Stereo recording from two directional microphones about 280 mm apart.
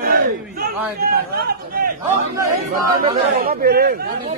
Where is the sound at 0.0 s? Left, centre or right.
Right.